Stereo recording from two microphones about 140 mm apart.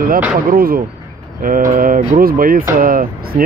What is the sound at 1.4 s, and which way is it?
Speech, 75° right (ahead or behind).